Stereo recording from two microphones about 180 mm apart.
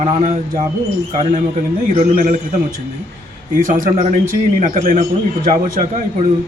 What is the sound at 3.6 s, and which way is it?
A man's voice, 45° right (ahead or behind).